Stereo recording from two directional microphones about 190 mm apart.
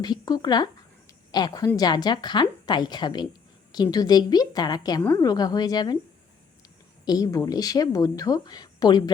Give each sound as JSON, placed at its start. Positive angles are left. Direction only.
{"t": 0.0, "sound": "a woman's voice", "side_deg": 20}
{"t": 7.0, "sound": "a woman's voice", "side_deg": 20}